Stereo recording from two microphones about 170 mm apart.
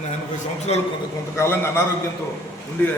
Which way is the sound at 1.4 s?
15° left (ahead or behind).